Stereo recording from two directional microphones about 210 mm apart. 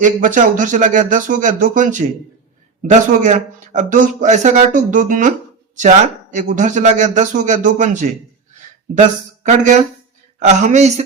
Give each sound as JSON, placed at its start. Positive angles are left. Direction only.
{"t": 0.0, "sound": "a man's voice", "side_deg": -40}
{"t": 6.3, "sound": "a man's voice", "side_deg": -35}